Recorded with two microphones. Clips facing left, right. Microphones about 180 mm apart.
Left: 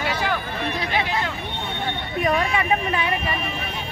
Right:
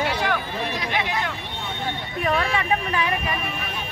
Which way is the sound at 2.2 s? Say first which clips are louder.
Left 1 dB; 10° left (ahead or behind).